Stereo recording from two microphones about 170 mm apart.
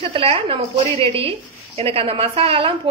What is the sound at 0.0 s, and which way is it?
A woman's voice, 35° right (ahead or behind).